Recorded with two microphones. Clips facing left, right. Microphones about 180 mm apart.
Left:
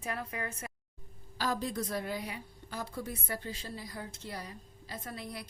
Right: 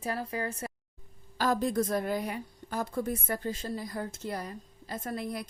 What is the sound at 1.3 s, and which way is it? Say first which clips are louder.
A woman's voice: right 6 dB; 50° right (ahead or behind).